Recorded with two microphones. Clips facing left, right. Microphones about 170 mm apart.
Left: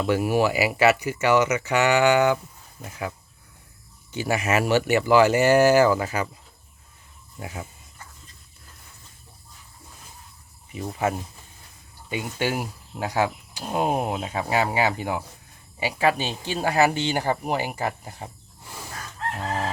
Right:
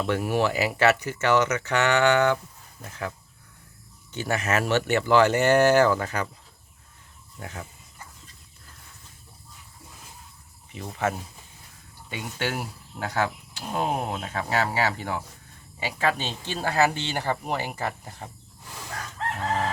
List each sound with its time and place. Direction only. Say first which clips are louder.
0.0 s speech: left 3 dB; 5° left (ahead or behind)
7.3 s speech: left 3 dB; 10° left (ahead or behind)
10.7 s speech: left 2 dB; 10° left (ahead or behind)